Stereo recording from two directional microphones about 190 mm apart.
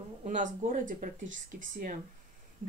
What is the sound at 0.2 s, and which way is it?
Speech, 40° right (ahead or behind).